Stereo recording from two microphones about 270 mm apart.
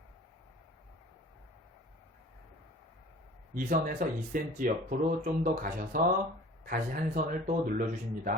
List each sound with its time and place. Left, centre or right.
3.5 s speech: right